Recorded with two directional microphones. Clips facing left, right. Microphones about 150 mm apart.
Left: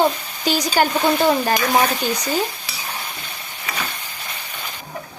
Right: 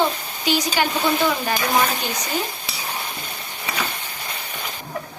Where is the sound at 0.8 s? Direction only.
40° left (ahead or behind).